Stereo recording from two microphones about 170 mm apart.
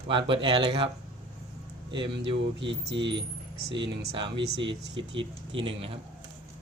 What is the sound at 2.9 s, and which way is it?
Speech, 90° right.